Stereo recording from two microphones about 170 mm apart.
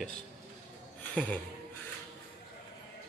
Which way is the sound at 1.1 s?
10° left (ahead or behind).